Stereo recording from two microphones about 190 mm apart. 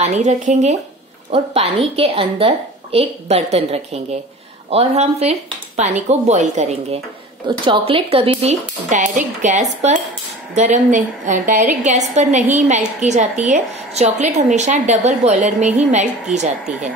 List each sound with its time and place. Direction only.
0.0 s a woman's voice: 35° right (ahead or behind)